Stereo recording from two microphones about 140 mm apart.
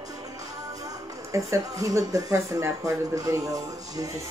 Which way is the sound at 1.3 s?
20° right (ahead or behind).